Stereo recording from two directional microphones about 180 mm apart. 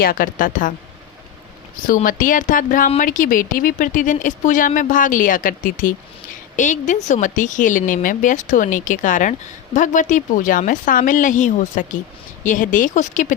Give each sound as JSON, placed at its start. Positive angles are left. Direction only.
{"t": 0.0, "sound": "speech", "side_deg": 55}
{"t": 1.9, "sound": "speech", "side_deg": 50}